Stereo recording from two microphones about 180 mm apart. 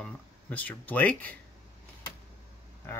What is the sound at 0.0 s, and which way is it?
Speech, 5° left (ahead or behind).